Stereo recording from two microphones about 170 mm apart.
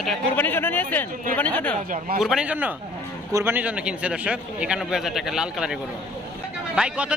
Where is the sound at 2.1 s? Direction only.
5° right (ahead or behind).